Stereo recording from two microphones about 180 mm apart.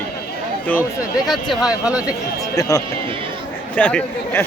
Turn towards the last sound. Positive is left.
turn(degrees=5)  # may be behind; listen again after turning